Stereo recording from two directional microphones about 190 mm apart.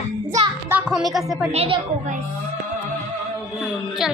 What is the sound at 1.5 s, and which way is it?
Speech, 30° right (ahead or behind).